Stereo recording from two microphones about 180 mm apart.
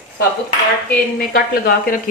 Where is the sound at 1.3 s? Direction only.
55° left (ahead or behind).